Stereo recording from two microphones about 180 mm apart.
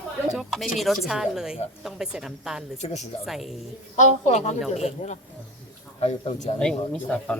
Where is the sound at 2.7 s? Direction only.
40° left (ahead or behind).